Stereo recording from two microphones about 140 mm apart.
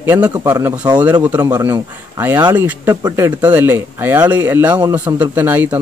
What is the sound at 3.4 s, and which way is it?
Speech, 10° right (ahead or behind).